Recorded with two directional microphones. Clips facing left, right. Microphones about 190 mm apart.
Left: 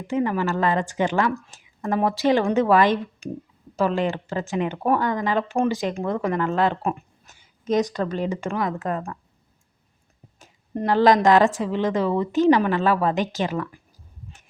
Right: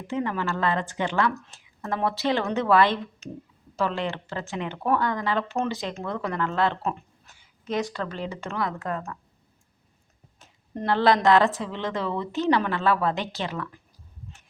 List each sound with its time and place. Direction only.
0.1 s speech: 15° left (ahead or behind)
7.9 s speech: 45° left (ahead or behind)
8.4 s speech: 15° left (ahead or behind)
10.4 s speech: 10° left (ahead or behind)